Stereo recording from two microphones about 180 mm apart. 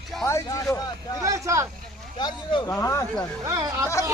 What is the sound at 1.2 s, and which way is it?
Speech, 15° right (ahead or behind).